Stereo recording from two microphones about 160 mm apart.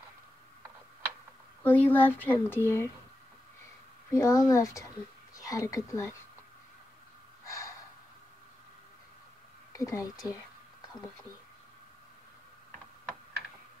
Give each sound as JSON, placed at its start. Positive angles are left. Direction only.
{"t": 1.6, "sound": "speech", "side_deg": 10}
{"t": 4.1, "sound": "speech", "side_deg": 20}
{"t": 7.4, "sound": "snort", "side_deg": 20}
{"t": 9.7, "sound": "speech", "side_deg": 20}
{"t": 10.2, "sound": "a sound", "side_deg": 20}